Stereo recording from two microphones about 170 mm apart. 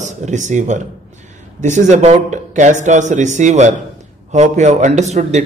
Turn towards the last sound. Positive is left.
turn(degrees=-40)  # may be behind; listen again after turning